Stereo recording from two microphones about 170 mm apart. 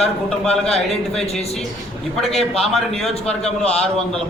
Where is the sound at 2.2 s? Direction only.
Centre (ahead or behind).